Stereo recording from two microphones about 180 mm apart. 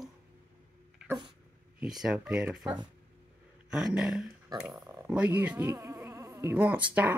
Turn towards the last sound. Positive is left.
turn(degrees=-10)  # may be behind; listen again after turning